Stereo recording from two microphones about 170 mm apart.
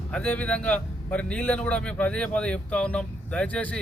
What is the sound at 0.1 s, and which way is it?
Speech, 10° left (ahead or behind).